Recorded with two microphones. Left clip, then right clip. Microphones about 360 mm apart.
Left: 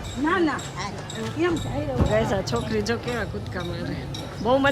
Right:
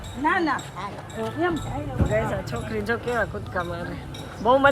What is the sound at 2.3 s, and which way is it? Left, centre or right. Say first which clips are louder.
Speech: left 4 dB; centre.